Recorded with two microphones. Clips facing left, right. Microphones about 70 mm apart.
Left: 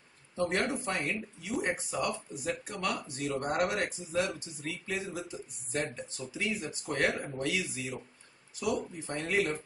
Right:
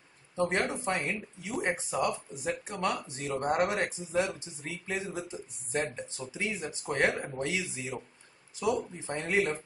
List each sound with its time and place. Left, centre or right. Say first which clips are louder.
0.4 s speech: right 1 dB; right